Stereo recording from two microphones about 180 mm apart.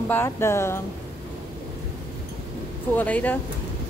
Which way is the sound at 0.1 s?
15° left (ahead or behind).